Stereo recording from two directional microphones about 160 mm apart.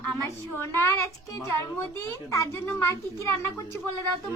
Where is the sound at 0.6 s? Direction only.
15° left (ahead or behind).